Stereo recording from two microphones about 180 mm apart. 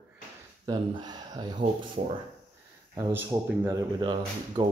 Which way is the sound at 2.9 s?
15° right (ahead or behind).